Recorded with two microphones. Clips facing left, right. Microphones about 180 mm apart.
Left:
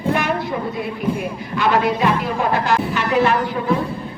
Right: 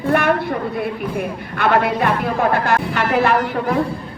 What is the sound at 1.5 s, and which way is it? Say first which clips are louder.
Speech: right 1 dB; 60° right (ahead or behind).